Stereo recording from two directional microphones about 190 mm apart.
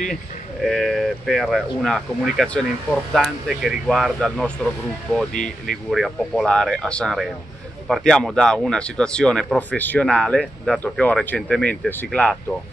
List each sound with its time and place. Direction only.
0.1 s speech: centre (ahead or behind)
5.3 s speech: 45° left (ahead or behind)
5.9 s speech: centre (ahead or behind)